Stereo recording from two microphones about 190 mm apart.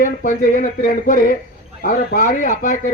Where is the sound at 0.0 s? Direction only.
45° left (ahead or behind).